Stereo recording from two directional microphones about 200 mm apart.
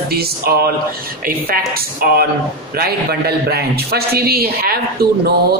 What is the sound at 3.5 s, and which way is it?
A man's voice, 50° right (ahead or behind).